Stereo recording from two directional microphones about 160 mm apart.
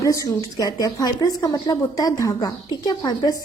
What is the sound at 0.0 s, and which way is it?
A woman's voice, 20° left (ahead or behind).